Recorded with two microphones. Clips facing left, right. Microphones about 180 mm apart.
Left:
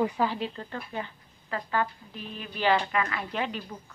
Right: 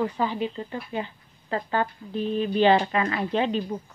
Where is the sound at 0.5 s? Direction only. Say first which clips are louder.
Right 5 dB; 10° right (ahead or behind).